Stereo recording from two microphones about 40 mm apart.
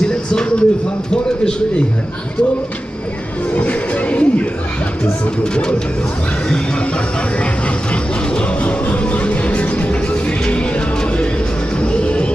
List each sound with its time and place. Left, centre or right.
0.0 s a sound: centre
3.5 s music: left
5.4 s speech: left
7.9 s music: left
11.8 s music: left